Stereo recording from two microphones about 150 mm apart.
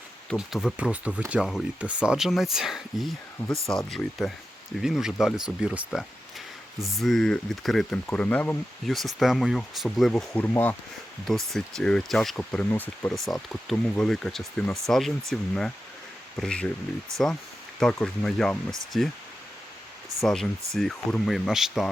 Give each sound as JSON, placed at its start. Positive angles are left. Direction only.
{"t": 0.3, "sound": "speech", "side_deg": -5}
{"t": 17.1, "sound": "speech", "side_deg": -20}
{"t": 17.7, "sound": "speech", "side_deg": 5}
{"t": 20.2, "sound": "speech", "side_deg": 0}